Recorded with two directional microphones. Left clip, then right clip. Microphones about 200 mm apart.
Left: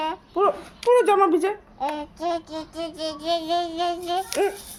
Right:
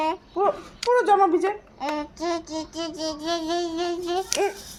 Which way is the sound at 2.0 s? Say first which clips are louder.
Left 1 dB; 10° left (ahead or behind).